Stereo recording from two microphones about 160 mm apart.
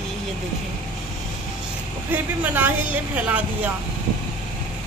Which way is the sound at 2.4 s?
10° right (ahead or behind).